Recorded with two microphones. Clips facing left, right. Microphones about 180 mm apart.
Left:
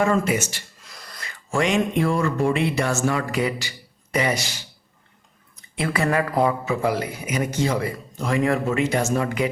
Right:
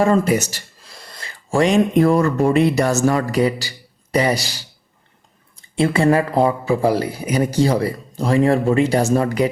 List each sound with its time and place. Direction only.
0.0 s speech: 35° right (ahead or behind)
5.7 s a man's voice: 30° right (ahead or behind)